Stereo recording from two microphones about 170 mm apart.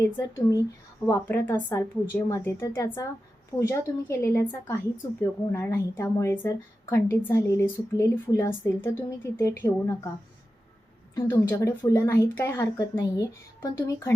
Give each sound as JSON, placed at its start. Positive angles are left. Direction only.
{"t": 0.0, "sound": "speech", "side_deg": 20}
{"t": 11.1, "sound": "speech", "side_deg": 20}